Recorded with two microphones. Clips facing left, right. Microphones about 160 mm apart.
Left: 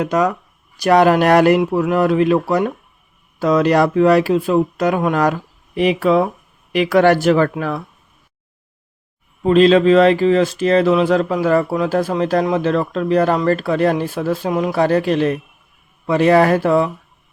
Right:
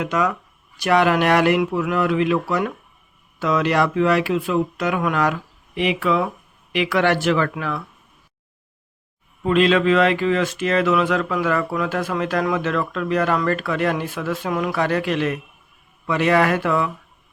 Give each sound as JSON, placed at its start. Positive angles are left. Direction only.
{"t": 0.0, "sound": "speech", "side_deg": 40}
{"t": 9.4, "sound": "speech", "side_deg": 35}